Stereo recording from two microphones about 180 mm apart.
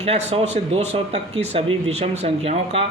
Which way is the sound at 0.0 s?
35° right (ahead or behind).